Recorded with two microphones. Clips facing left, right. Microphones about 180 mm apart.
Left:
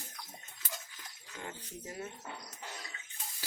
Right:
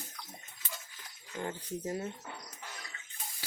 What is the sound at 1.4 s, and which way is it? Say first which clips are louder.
Speech: right 7 dB; 35° right (ahead or behind).